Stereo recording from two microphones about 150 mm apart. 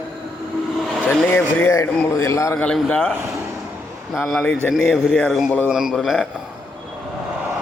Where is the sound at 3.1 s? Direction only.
15° right (ahead or behind).